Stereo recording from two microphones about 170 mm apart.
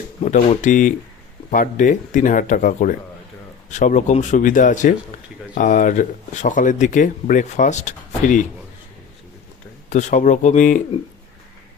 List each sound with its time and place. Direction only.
0.2 s speech: 40° left (ahead or behind)
9.9 s speech: 45° left (ahead or behind)